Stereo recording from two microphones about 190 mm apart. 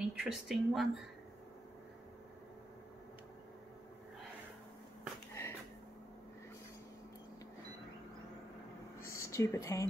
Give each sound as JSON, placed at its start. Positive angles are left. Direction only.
{"t": 0.0, "sound": "speech", "side_deg": 0}
{"t": 5.3, "sound": "a sound", "side_deg": 15}
{"t": 9.1, "sound": "speech", "side_deg": 15}